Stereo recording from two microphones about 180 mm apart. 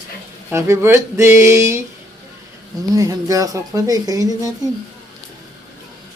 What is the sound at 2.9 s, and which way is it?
Speech, 20° right (ahead or behind).